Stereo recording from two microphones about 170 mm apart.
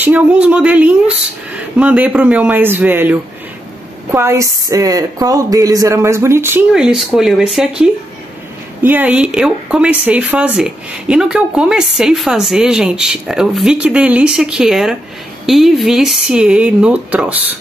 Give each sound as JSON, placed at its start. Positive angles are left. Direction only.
{"t": 0.0, "sound": "speech", "side_deg": -10}
{"t": 6.7, "sound": "speech", "side_deg": -5}